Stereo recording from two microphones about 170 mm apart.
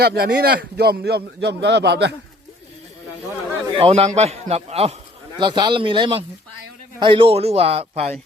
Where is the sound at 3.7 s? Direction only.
35° right (ahead or behind).